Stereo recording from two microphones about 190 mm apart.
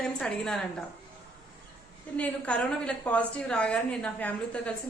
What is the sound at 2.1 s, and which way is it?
A woman's voice, 5° left (ahead or behind).